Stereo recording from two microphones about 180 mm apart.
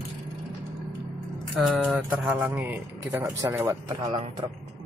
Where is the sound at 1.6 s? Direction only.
5° right (ahead or behind); by 4.2 s 20° right (ahead or behind).